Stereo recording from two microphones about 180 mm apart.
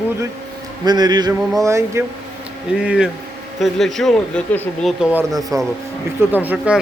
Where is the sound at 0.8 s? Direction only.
25° right (ahead or behind).